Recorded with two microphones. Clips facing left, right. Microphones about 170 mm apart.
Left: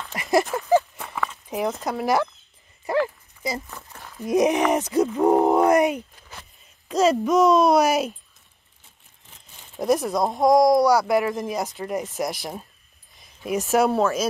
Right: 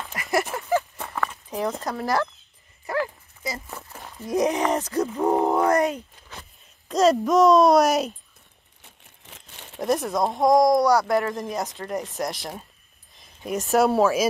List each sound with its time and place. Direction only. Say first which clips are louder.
0.1 s a sound: left 4 dB; 20° left (ahead or behind)
0.9 s horse: even; centre (ahead or behind)
1.5 s speech: left 3 dB; 10° left (ahead or behind)
4.3 s speech: left 3 dB; 20° left (ahead or behind)
6.9 s speech: even; centre (ahead or behind)
8.8 s a sound: right 6 dB; 75° right (ahead or behind)
9.8 s speech: left 2 dB; centre (ahead or behind)